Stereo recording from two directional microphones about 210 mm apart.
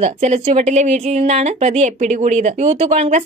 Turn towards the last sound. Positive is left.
turn(degrees=-30)  # may be behind; listen again after turning